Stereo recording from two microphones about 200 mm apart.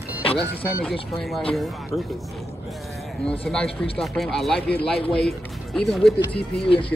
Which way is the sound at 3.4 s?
5° left (ahead or behind).